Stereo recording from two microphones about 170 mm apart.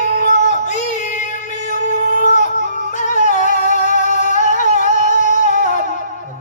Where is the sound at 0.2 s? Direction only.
45° left (ahead or behind).